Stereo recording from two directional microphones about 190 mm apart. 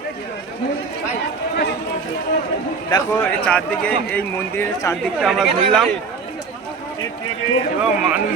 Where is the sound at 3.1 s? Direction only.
10° left (ahead or behind).